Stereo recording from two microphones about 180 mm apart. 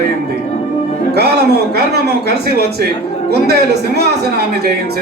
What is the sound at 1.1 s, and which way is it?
Speech, 65° right (ahead or behind).